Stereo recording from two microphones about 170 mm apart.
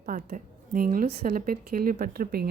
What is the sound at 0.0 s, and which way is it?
Speech, 55° right (ahead or behind).